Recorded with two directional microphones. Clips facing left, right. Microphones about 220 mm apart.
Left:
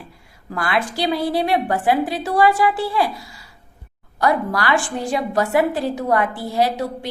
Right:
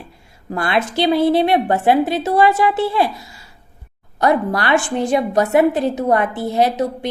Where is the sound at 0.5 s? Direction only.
25° right (ahead or behind).